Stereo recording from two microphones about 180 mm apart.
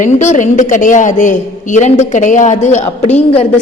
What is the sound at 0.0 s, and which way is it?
A woman's voice, 40° left (ahead or behind).